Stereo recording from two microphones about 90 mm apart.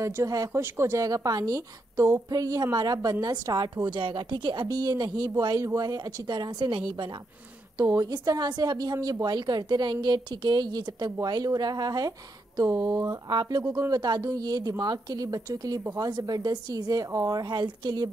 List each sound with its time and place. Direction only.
0.0 s a woman's voice: 40° right (ahead or behind)
0.5 s speech: 30° right (ahead or behind)
1.0 s a woman's voice: 45° right (ahead or behind)
7.7 s a woman's voice: 40° right (ahead or behind)
13.3 s a woman's voice: 55° right (ahead or behind)